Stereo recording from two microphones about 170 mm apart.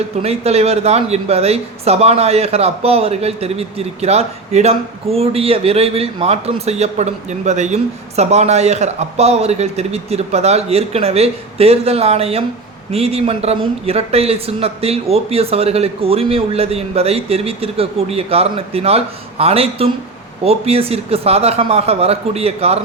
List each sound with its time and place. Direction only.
0.2 s speech: 40° right (ahead or behind)